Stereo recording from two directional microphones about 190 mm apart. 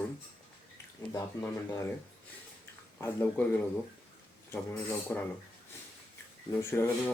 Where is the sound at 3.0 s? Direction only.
10° left (ahead or behind).